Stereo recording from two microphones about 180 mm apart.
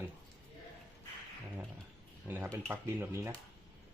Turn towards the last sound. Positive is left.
turn(degrees=-10)  # may be behind; listen again after turning